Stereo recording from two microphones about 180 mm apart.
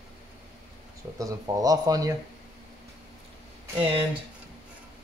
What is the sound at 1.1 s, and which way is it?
Speech, 20° right (ahead or behind).